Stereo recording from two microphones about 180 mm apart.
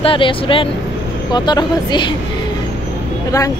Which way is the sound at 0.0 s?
30° left (ahead or behind).